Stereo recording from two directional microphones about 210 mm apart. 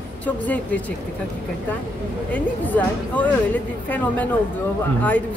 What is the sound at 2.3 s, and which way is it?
Speech, 5° left (ahead or behind).